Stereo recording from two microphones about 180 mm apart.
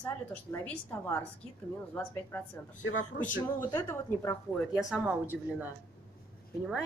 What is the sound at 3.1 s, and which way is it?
Speech, 60° left (ahead or behind).